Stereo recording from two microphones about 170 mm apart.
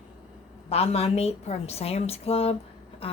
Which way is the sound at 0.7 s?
35° left (ahead or behind).